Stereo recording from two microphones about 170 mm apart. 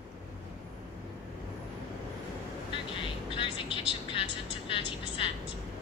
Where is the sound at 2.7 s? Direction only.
30° left (ahead or behind).